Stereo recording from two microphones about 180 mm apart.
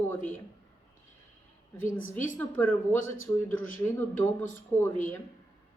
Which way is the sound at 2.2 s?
10° left (ahead or behind).